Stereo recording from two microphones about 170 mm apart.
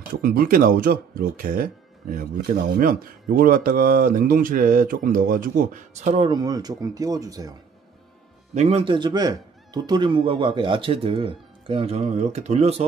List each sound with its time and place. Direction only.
0.1 s speech: 65° right (ahead or behind); by 6.2 s 45° right (ahead or behind)
6.2 s speech: 25° right (ahead or behind)
8.5 s a man's voice: 35° right (ahead or behind)